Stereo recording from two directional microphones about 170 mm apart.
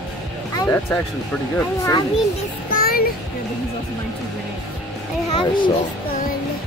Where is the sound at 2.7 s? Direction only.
60° left (ahead or behind).